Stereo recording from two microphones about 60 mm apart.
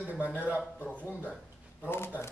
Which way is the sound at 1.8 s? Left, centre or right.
Left.